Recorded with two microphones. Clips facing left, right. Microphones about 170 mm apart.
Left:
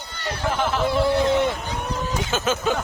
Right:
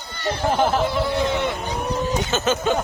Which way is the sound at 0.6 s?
35° right (ahead or behind).